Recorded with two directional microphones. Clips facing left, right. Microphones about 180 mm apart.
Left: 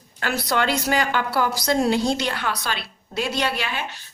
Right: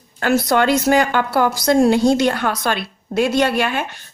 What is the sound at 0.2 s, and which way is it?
A woman's voice, 50° right (ahead or behind).